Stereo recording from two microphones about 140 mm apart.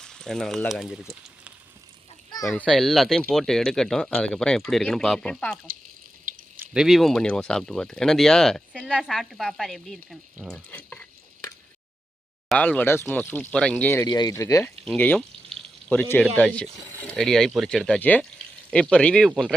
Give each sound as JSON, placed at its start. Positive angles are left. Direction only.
{"t": 0.0, "sound": "speech", "side_deg": 5}
{"t": 6.7, "sound": "speech", "side_deg": 0}
{"t": 10.7, "sound": "speech", "side_deg": 10}
{"t": 12.5, "sound": "speech", "side_deg": 10}
{"t": 14.0, "sound": "speech", "side_deg": 30}
{"t": 14.8, "sound": "a sound", "side_deg": 10}
{"t": 16.4, "sound": "speech", "side_deg": 10}